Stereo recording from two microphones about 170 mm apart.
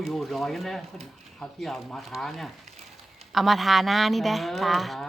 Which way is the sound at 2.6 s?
40° right (ahead or behind).